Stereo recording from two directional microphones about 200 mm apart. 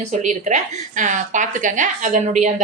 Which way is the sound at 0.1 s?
35° right (ahead or behind).